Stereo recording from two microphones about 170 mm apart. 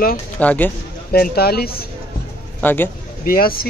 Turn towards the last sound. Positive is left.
turn(degrees=60)  # may be behind; listen again after turning